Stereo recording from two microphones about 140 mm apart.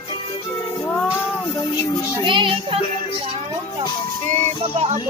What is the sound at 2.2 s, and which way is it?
Music, 35° right (ahead or behind).